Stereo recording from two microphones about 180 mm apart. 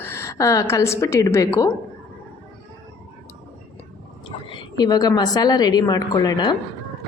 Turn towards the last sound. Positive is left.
turn(degrees=20)  # may be behind; listen again after turning